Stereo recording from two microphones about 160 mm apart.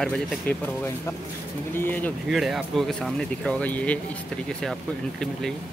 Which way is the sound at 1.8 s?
10° left (ahead or behind).